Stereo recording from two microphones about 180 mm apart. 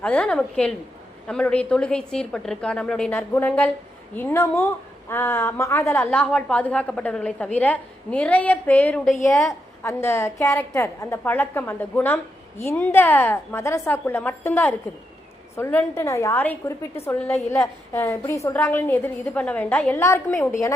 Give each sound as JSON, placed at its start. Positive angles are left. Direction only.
{"t": 0.0, "sound": "a woman's voice", "side_deg": 5}